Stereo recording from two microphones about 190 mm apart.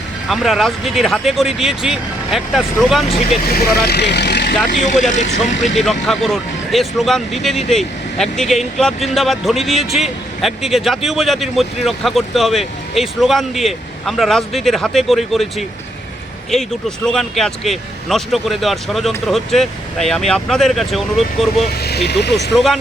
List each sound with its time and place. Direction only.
0.3 s speech: centre (ahead or behind)
3.4 s speech: 55° left (ahead or behind)
4.7 s speech: 40° left (ahead or behind)
5.7 s speech: centre (ahead or behind)
21.8 s speech: 60° left (ahead or behind)
22.5 s speech: centre (ahead or behind)